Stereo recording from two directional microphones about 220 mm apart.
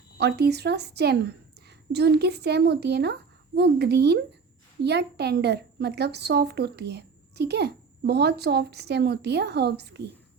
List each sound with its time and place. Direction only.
0.2 s a woman's voice: 50° right (ahead or behind)